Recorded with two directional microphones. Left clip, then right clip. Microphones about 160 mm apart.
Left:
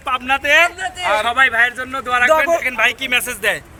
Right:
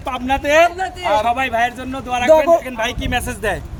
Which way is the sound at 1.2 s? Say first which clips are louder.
Left 3 dB; 10° right (ahead or behind).